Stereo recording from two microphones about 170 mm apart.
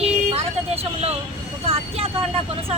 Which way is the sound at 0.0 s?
35° right (ahead or behind).